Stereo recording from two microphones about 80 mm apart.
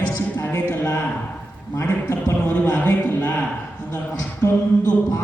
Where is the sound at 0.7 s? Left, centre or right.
Left.